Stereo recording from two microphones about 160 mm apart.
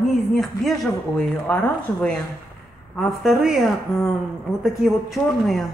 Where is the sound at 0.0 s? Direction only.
Centre (ahead or behind).